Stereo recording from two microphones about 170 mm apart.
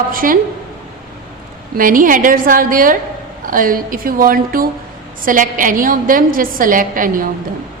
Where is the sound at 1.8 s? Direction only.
55° right (ahead or behind).